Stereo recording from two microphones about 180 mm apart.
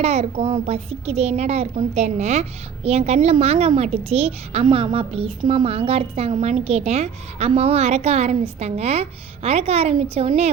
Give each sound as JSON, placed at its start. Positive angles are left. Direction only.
{"t": 0.0, "sound": "a child's voice", "side_deg": -35}